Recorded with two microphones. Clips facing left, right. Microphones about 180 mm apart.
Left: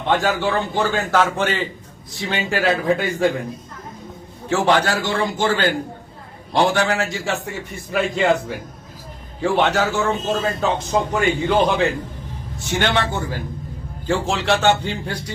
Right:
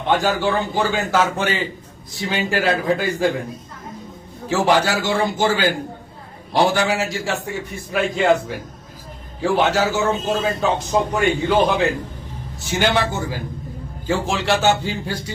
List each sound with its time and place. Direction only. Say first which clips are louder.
0.1 s a man's voice: right 1 dB; centre (ahead or behind)
4.4 s a man's voice: even; 5° right (ahead or behind)
6.7 s a man's voice: even; centre (ahead or behind)